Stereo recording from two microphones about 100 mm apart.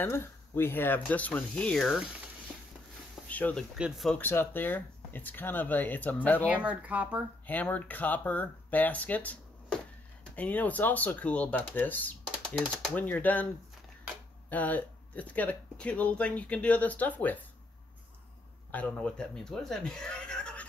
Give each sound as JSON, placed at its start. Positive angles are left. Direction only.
{"t": 0.0, "sound": "speech", "side_deg": 25}
{"t": 3.3, "sound": "speech", "side_deg": 15}
{"t": 3.7, "sound": "speech", "side_deg": -5}
{"t": 4.2, "sound": "speech", "side_deg": 20}
{"t": 6.4, "sound": "speech", "side_deg": -15}
{"t": 7.4, "sound": "speech", "side_deg": 15}
{"t": 14.5, "sound": "speech", "side_deg": 15}
{"t": 18.9, "sound": "speech", "side_deg": 5}